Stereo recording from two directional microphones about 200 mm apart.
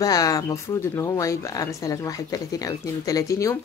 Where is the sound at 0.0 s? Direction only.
20° left (ahead or behind).